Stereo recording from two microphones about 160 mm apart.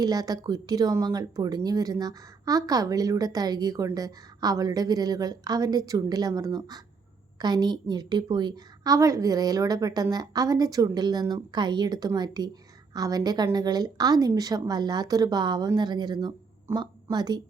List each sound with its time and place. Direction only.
0.0 s a woman's voice: 25° right (ahead or behind)